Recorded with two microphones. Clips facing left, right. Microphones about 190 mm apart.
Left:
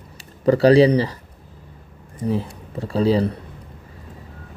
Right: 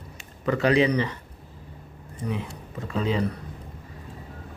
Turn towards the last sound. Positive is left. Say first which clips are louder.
# left 7 dB
turn(degrees=35)  # may be behind; listen again after turning